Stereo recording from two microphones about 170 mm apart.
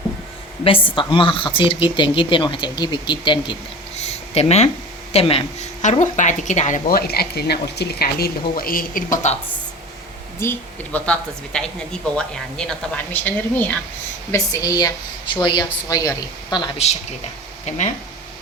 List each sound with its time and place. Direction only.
0.9 s a woman's voice: 30° left (ahead or behind); by 9.4 s 45° left (ahead or behind)
10.4 s a woman's voice: 10° left (ahead or behind)
14.3 s speech: 20° left (ahead or behind)
17.7 s speech: 40° left (ahead or behind)